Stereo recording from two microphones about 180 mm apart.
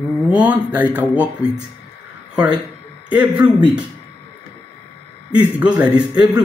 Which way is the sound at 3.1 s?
10° right (ahead or behind).